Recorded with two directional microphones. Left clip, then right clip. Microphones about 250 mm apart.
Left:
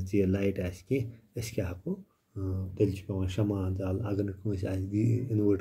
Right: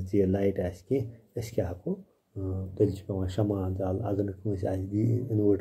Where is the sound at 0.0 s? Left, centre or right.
Centre.